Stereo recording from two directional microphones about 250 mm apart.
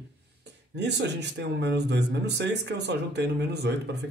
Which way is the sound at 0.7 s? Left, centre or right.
Right.